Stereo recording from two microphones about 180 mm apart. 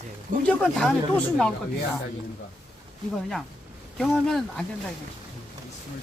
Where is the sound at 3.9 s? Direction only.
Centre (ahead or behind).